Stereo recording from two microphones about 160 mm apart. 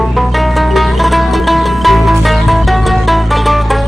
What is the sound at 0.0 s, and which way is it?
Music, centre (ahead or behind).